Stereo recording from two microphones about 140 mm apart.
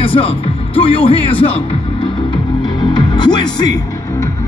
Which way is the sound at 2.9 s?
30° left (ahead or behind).